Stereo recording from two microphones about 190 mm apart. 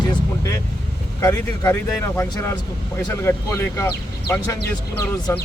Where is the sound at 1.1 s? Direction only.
15° left (ahead or behind).